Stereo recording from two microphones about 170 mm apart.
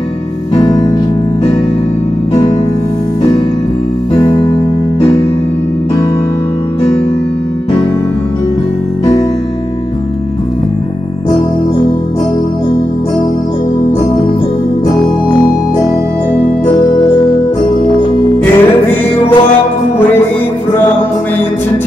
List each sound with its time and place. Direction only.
0.6 s music: 20° left (ahead or behind)
18.4 s music: 10° left (ahead or behind)